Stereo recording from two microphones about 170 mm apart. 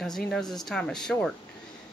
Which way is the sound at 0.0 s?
5° left (ahead or behind).